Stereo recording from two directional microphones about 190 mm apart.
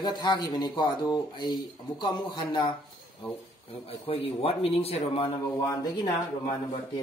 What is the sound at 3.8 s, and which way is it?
Speech, 30° left (ahead or behind).